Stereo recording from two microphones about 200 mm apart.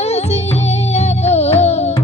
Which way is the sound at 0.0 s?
35° left (ahead or behind).